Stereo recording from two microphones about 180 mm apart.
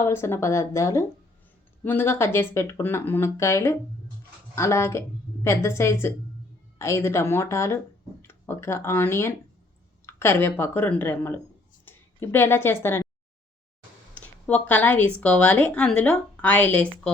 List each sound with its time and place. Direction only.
0.0 s speech: 15° left (ahead or behind)
14.2 s speech: 10° left (ahead or behind)